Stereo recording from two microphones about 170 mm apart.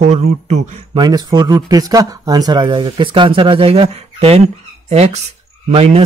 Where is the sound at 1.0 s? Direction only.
25° right (ahead or behind).